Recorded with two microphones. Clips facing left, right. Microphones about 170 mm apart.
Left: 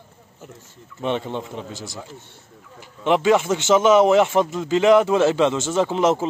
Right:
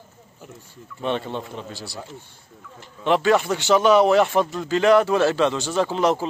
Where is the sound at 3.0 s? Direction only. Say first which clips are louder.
Left 1 dB; 20° left (ahead or behind).